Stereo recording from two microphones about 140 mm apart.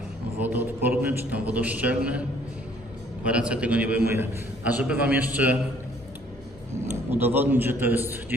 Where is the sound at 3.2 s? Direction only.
10° right (ahead or behind).